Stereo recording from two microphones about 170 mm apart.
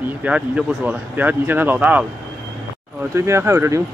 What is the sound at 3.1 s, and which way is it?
Speech, 15° right (ahead or behind).